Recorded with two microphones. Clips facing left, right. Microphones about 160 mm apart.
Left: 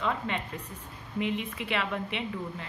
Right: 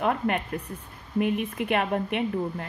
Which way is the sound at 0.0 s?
60° right (ahead or behind).